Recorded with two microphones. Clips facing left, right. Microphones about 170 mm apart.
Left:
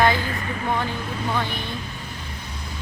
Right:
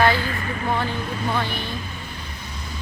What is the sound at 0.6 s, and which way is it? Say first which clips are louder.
Speech: right 1 dB; 5° right (ahead or behind).